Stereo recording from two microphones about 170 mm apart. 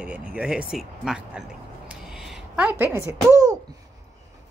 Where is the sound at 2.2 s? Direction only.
5° right (ahead or behind).